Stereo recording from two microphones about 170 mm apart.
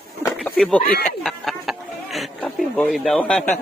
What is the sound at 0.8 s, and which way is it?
Speech, 60° left (ahead or behind).